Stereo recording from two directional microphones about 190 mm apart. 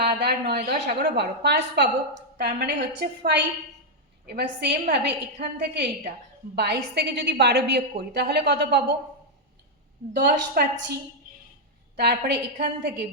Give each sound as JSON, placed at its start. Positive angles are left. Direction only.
{"t": 0.0, "sound": "a woman's voice", "side_deg": -60}
{"t": 10.2, "sound": "a woman's voice", "side_deg": -55}
{"t": 11.9, "sound": "a woman's voice", "side_deg": -60}